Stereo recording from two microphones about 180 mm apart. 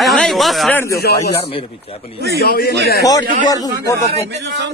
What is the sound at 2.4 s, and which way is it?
Speech, 60° left (ahead or behind).